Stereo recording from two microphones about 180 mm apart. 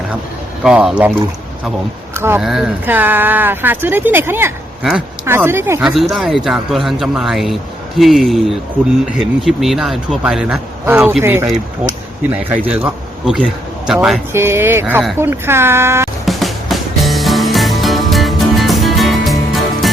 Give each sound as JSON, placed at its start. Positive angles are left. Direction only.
{"t": 0.6, "sound": "a man's voice", "side_deg": -5}
{"t": 2.1, "sound": "speech", "side_deg": -15}
{"t": 2.4, "sound": "a man's voice", "side_deg": 0}
{"t": 5.2, "sound": "speech", "side_deg": -15}
{"t": 5.8, "sound": "a man's voice", "side_deg": 0}
{"t": 16.2, "sound": "music", "side_deg": 0}